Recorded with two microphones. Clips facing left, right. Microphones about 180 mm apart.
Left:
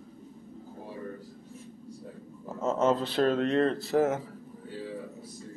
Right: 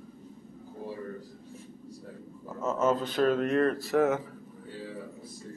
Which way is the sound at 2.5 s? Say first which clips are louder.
Left 1 dB; 30° left (ahead or behind).